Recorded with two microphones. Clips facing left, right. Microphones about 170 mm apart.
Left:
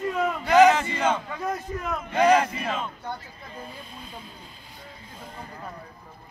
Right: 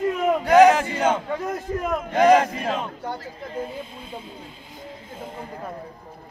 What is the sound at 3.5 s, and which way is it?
Speech, 25° right (ahead or behind).